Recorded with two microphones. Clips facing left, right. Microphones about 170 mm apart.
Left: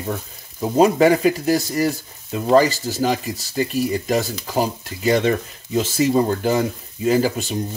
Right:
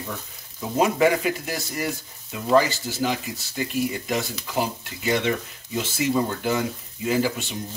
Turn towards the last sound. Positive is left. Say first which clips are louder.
# left 5 dB
turn(degrees=40)  # may be behind; listen again after turning